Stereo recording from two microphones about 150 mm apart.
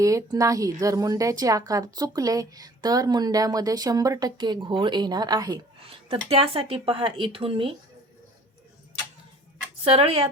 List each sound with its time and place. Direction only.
0.0 s speech: 20° right (ahead or behind)
6.1 s speech: 40° right (ahead or behind)
9.8 s speech: 40° right (ahead or behind)